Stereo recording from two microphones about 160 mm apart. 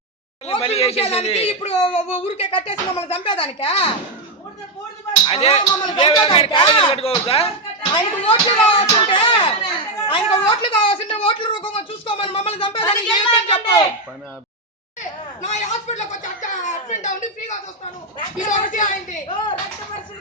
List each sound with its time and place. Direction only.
0.4 s speech: 40° left (ahead or behind)
5.3 s speech: 40° left (ahead or behind)
15.4 s speech: 45° left (ahead or behind)
18.3 s speech: 55° left (ahead or behind)